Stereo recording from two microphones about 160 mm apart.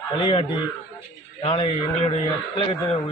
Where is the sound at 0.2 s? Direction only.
35° left (ahead or behind).